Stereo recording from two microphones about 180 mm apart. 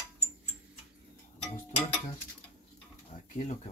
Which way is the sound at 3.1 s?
45° left (ahead or behind).